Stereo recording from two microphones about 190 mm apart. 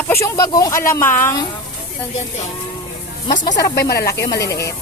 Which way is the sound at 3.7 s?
55° left (ahead or behind).